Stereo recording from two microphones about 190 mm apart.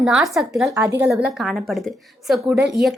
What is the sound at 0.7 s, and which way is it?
Speech, 15° right (ahead or behind).